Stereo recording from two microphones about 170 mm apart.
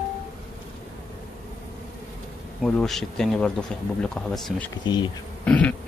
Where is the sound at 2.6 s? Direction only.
Centre (ahead or behind).